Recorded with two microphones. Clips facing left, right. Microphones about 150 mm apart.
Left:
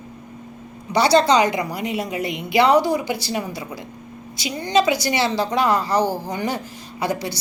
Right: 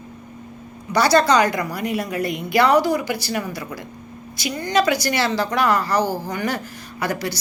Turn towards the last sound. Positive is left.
turn(degrees=25)  # may be behind; listen again after turning